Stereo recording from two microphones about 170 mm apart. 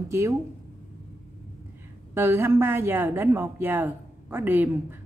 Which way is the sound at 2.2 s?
15° right (ahead or behind).